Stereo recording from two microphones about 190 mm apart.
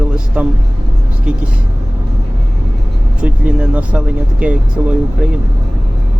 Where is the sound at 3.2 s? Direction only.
5° right (ahead or behind).